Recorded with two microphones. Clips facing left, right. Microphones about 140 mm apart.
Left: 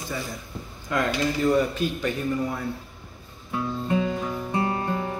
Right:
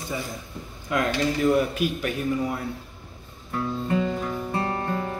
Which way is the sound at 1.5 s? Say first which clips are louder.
Even; 10° right (ahead or behind).